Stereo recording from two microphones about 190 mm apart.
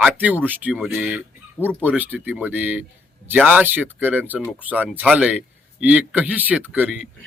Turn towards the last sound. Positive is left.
turn(degrees=-5)  # may be behind; listen again after turning